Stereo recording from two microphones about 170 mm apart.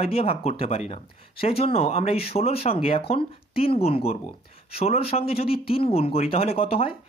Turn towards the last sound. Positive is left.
turn(degrees=35)  # may be behind; listen again after turning